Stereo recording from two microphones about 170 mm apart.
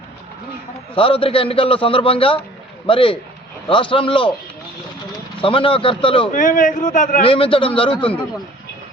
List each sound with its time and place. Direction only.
0.9 s a man's voice: 30° left (ahead or behind)
5.4 s a man's voice: 30° left (ahead or behind)
6.3 s a man's voice: 50° left (ahead or behind)
7.2 s a man's voice: 30° left (ahead or behind)